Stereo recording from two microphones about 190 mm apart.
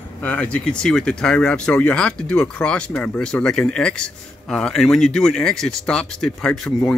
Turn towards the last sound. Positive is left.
turn(degrees=0)  # may be behind; listen again after turning